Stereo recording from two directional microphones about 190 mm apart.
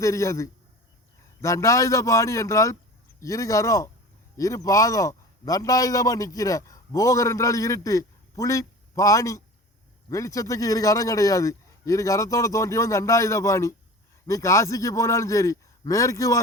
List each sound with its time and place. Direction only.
0.0 s a man's voice: 15° left (ahead or behind)